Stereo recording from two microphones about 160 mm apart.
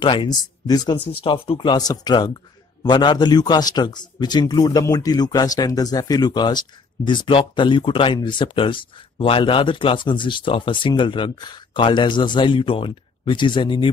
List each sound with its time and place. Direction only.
0.0 s a man's voice: 30° left (ahead or behind)